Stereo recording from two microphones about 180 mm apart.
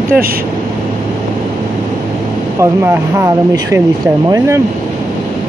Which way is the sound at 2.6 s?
15° right (ahead or behind).